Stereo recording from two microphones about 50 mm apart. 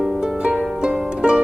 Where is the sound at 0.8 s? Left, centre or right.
Centre.